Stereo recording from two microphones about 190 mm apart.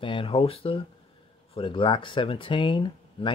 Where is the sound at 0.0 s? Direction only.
25° left (ahead or behind).